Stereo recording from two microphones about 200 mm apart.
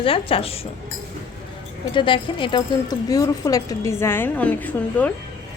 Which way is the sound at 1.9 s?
25° left (ahead or behind).